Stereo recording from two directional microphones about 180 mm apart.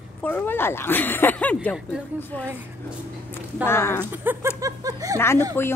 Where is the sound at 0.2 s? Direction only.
10° left (ahead or behind).